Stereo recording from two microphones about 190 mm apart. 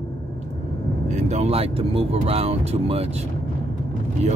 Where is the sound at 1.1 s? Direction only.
35° right (ahead or behind).